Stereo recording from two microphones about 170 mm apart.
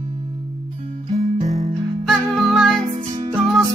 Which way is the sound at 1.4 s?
40° right (ahead or behind).